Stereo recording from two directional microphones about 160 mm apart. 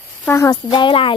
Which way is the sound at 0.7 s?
30° left (ahead or behind).